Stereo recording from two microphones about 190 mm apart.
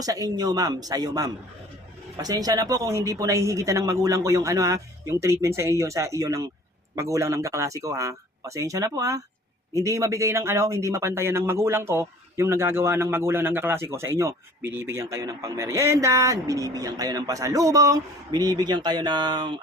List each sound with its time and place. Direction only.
0.0 s speech: 20° right (ahead or behind)